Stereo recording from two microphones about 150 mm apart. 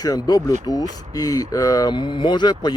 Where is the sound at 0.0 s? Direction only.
25° left (ahead or behind).